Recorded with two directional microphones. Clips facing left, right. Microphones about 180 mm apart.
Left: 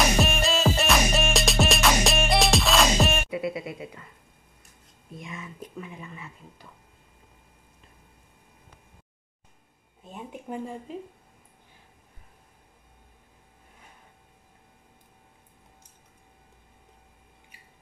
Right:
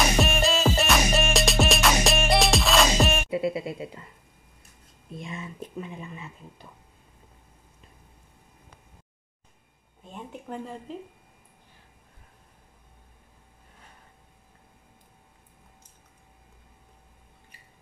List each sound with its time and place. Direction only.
0.2 s music: centre (ahead or behind)
3.3 s music: 30° right (ahead or behind)
5.1 s speech: 30° right (ahead or behind)